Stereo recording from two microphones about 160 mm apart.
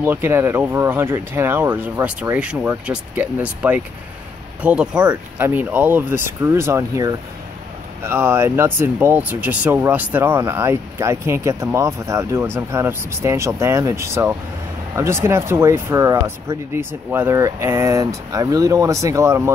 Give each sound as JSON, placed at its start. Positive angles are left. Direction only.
{"t": 0.0, "sound": "speech", "side_deg": -15}